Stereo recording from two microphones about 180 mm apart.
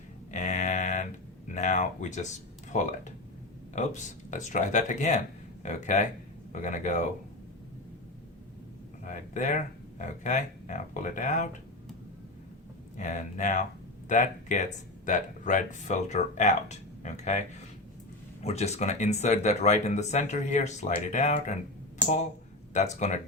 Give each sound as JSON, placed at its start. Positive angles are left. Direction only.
{"t": 0.3, "sound": "a sound", "side_deg": 40}
{"t": 1.5, "sound": "speech", "side_deg": 40}
{"t": 9.0, "sound": "speech", "side_deg": 45}
{"t": 13.0, "sound": "speech", "side_deg": 45}
{"t": 18.4, "sound": "speech", "side_deg": 35}
{"t": 22.7, "sound": "speech", "side_deg": 40}